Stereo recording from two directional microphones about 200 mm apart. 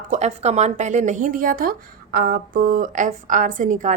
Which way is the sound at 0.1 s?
35° right (ahead or behind).